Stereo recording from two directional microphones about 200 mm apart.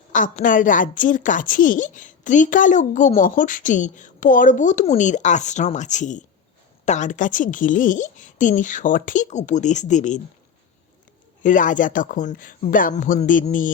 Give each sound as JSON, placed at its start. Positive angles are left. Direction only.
{"t": 0.1, "sound": "a woman's voice", "side_deg": 40}
{"t": 11.4, "sound": "a woman's voice", "side_deg": 40}